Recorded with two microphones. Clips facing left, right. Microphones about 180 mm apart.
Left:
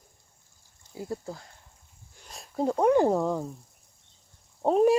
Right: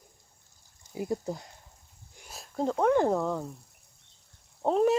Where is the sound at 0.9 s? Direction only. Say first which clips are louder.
Right 3 dB; 15° right (ahead or behind).